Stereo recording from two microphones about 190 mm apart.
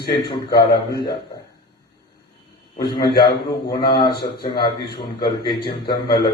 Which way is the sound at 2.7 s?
20° left (ahead or behind).